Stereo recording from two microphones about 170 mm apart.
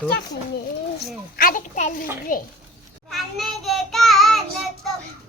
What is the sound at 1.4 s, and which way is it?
A child's voice, 50° left (ahead or behind).